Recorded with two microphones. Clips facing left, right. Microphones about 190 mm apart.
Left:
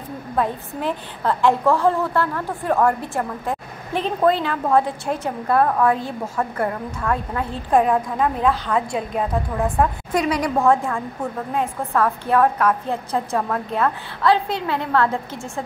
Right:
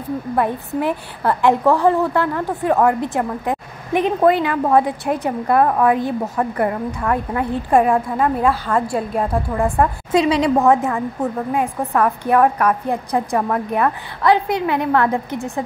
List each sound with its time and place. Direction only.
0.4 s a woman's voice: 15° right (ahead or behind)
10.1 s a woman's voice: 25° right (ahead or behind)